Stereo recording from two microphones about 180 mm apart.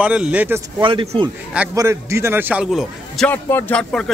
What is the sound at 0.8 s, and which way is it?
Speech, 30° right (ahead or behind).